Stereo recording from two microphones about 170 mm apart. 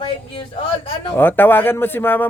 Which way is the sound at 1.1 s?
10° left (ahead or behind).